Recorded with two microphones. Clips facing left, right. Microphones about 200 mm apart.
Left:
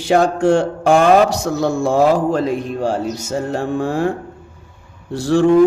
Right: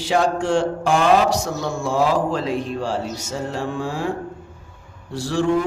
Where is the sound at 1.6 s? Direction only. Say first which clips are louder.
Left 6 dB; 55° left (ahead or behind).